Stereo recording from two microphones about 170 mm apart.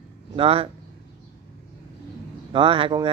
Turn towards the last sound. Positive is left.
turn(degrees=-30)  # may be behind; listen again after turning